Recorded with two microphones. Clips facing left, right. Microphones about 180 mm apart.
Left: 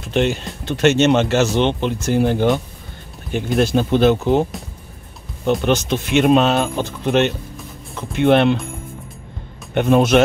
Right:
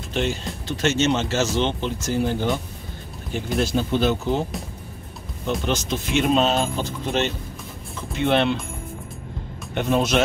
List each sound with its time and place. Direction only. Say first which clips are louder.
0.1 s speech: left 6 dB; 65° left (ahead or behind)
5.7 s speech: left 6 dB; 65° left (ahead or behind)
9.8 s speech: left 7 dB; 60° left (ahead or behind)